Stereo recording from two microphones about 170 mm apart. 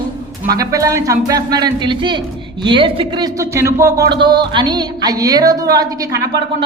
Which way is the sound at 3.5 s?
15° right (ahead or behind).